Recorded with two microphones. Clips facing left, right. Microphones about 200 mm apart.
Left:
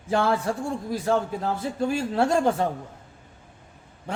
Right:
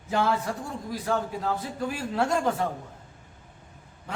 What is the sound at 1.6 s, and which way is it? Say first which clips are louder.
Speech: left 6 dB; 25° left (ahead or behind).